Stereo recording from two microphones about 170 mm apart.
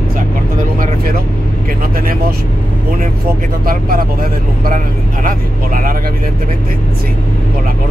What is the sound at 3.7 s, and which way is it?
Speech, 60° right (ahead or behind).